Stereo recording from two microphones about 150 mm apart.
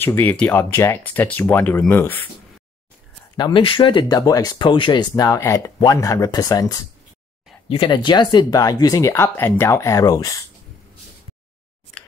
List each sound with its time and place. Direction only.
0.0 s speech: 15° left (ahead or behind)
3.3 s speech: 30° left (ahead or behind)